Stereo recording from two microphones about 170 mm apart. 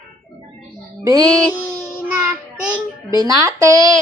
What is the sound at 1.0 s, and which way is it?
Speech, 20° right (ahead or behind).